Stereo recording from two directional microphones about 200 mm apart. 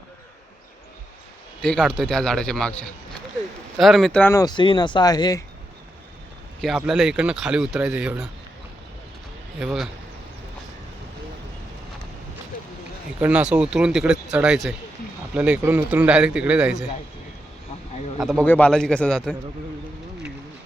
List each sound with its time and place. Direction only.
1.6 s speech: 5° left (ahead or behind)
6.6 s speech: centre (ahead or behind)
9.6 s speech: centre (ahead or behind)
13.1 s speech: 10° right (ahead or behind)
18.2 s speech: centre (ahead or behind)